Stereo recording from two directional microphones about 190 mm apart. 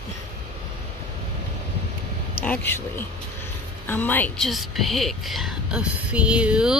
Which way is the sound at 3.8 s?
10° left (ahead or behind).